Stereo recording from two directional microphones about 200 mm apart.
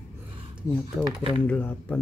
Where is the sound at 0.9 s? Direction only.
5° right (ahead or behind).